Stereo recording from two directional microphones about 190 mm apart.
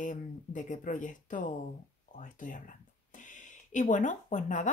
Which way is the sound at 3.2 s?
40° left (ahead or behind).